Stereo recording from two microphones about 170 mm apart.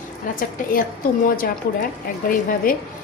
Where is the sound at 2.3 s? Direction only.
55° left (ahead or behind).